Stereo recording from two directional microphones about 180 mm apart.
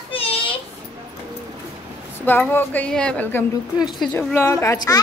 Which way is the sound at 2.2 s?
10° left (ahead or behind).